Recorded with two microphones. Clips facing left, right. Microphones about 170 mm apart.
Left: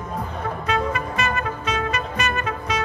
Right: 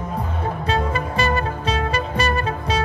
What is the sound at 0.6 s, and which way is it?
Music, 30° right (ahead or behind).